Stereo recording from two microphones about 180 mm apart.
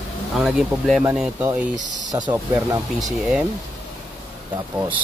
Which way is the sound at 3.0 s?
Centre (ahead or behind).